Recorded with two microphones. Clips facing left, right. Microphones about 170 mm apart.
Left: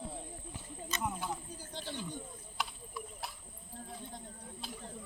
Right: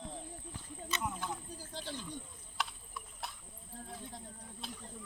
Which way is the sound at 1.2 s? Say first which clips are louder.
Left 1 dB; centre (ahead or behind).